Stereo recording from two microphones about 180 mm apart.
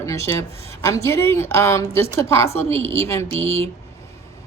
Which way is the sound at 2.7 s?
30° right (ahead or behind).